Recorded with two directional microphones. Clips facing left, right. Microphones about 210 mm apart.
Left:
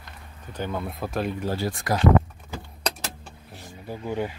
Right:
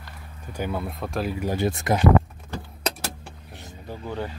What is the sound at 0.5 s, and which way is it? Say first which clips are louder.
Speech: right 1 dB; 10° right (ahead or behind).